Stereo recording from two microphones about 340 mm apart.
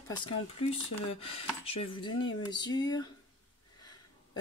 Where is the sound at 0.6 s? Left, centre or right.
Centre.